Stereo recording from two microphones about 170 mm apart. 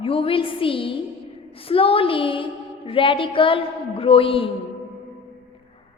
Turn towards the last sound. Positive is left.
turn(degrees=30)  # may be behind; listen again after turning